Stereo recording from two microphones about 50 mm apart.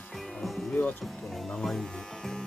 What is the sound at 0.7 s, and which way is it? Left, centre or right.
Speech, left.